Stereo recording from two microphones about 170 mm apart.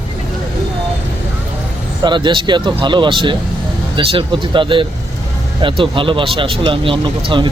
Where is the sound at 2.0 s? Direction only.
25° right (ahead or behind).